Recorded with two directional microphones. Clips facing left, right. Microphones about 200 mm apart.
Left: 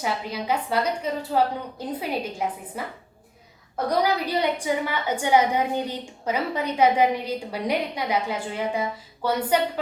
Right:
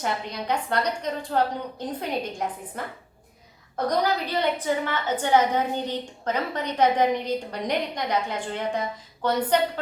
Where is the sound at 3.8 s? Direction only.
10° left (ahead or behind).